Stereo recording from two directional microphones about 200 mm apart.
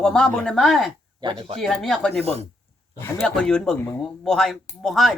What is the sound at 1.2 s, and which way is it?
Speech, 25° right (ahead or behind).